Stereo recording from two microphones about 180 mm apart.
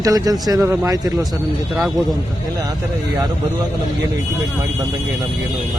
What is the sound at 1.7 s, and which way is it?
Speech, centre (ahead or behind).